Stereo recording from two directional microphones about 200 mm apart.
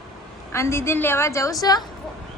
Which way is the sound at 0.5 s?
15° left (ahead or behind).